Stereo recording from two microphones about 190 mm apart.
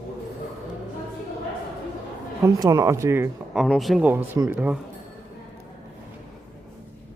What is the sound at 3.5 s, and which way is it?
Speech, centre (ahead or behind).